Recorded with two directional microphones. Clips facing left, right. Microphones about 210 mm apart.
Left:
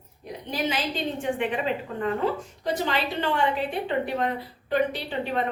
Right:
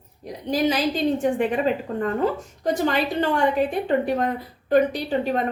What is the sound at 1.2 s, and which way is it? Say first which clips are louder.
A woman's voice: right 6 dB; 40° right (ahead or behind).